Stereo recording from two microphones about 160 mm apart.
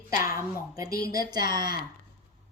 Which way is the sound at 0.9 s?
70° left (ahead or behind).